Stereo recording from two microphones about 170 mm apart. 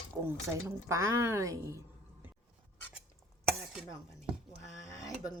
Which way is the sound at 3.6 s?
5° right (ahead or behind).